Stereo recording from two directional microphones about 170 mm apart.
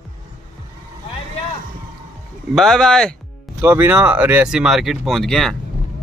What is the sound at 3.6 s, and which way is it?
Speech, 15° right (ahead or behind).